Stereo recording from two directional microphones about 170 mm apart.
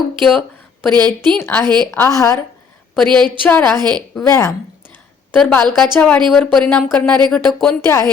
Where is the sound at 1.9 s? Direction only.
15° left (ahead or behind).